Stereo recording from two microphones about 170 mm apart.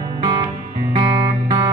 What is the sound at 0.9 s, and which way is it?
Music, 25° right (ahead or behind).